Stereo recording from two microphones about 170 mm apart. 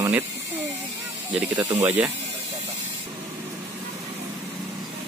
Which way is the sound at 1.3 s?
10° right (ahead or behind).